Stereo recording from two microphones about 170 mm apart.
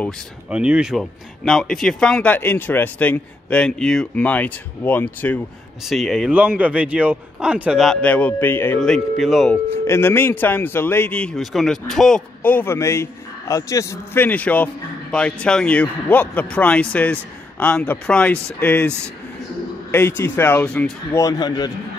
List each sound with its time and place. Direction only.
0.5 s a man's voice: 5° right (ahead or behind); by 5.4 s 10° left (ahead or behind)
5.9 s speech: centre (ahead or behind)
9.8 s a man's voice: 15° left (ahead or behind)
21.2 s a man's voice: 20° left (ahead or behind)